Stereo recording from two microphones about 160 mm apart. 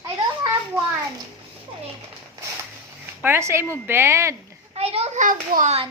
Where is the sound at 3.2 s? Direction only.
15° right (ahead or behind).